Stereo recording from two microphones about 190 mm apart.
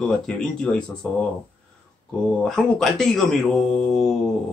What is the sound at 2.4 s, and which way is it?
Speech, centre (ahead or behind).